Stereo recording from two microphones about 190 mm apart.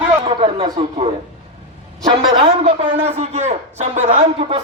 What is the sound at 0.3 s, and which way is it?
Speech, 30° right (ahead or behind).